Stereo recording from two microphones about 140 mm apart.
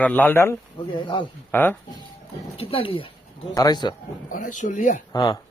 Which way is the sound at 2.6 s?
40° left (ahead or behind).